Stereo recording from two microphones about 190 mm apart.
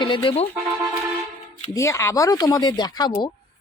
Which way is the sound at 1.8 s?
15° left (ahead or behind).